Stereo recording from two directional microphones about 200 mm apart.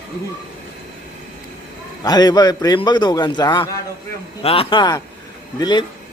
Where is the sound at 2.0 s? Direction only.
20° left (ahead or behind).